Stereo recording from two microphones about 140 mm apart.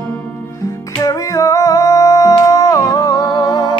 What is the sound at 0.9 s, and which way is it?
Music, 25° left (ahead or behind).